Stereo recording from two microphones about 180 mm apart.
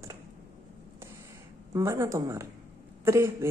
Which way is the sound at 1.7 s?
15° right (ahead or behind).